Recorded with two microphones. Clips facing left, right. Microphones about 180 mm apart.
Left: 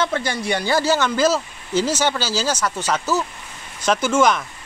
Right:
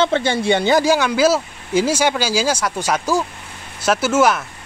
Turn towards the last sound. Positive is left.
turn(degrees=-5)  # may be behind; listen again after turning